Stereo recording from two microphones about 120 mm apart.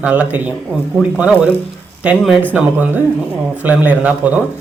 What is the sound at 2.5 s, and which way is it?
A man's voice, 15° right (ahead or behind).